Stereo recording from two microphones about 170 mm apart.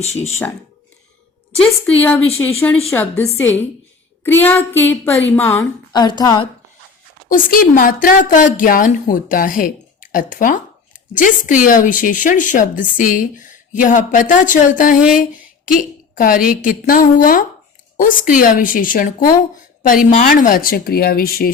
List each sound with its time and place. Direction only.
0.0 s speech: 40° left (ahead or behind)
1.9 s a woman's voice: 10° left (ahead or behind)
5.9 s a woman's voice: 25° left (ahead or behind)
7.3 s a woman's voice: 55° left (ahead or behind)